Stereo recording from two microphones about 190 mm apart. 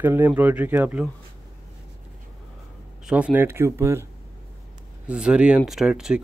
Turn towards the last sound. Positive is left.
turn(degrees=-5)  # may be behind; listen again after turning